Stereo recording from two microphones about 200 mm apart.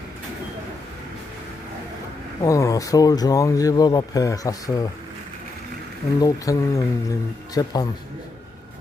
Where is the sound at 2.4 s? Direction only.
15° left (ahead or behind).